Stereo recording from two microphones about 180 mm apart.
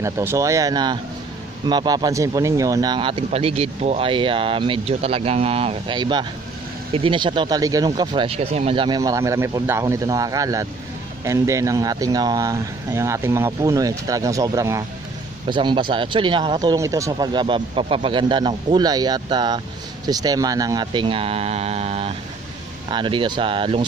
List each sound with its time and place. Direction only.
0.0 s speech: 15° right (ahead or behind)